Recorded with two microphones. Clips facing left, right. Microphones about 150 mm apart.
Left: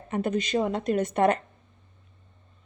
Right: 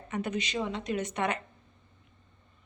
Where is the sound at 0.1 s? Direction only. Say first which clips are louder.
Left 6 dB; 45° left (ahead or behind).